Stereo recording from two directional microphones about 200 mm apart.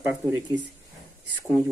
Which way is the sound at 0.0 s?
15° right (ahead or behind).